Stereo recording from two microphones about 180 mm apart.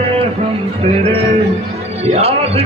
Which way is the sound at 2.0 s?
35° right (ahead or behind).